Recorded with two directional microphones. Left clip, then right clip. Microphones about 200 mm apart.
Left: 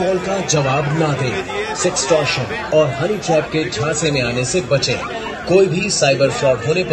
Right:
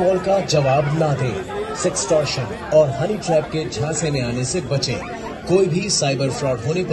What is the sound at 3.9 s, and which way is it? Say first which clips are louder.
A man's voice: left 6 dB; 55° right (ahead or behind).